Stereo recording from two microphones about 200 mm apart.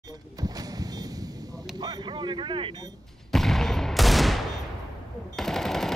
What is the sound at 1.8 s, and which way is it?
Speech, 20° right (ahead or behind).